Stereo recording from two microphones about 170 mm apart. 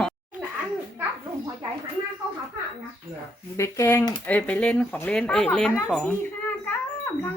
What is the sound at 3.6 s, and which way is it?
Speech, 15° left (ahead or behind).